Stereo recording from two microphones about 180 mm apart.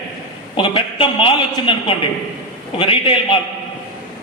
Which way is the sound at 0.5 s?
30° left (ahead or behind).